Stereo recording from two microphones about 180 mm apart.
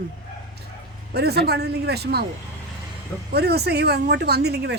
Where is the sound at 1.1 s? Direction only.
65° right (ahead or behind).